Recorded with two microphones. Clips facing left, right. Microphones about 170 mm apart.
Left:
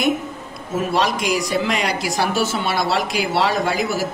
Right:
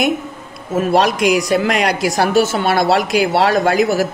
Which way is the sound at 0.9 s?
65° right (ahead or behind).